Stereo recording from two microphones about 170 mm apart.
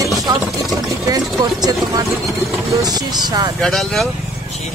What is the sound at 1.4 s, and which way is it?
Speech, 25° right (ahead or behind).